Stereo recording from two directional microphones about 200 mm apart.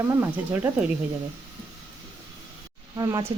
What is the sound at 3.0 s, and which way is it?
Speech, 20° right (ahead or behind).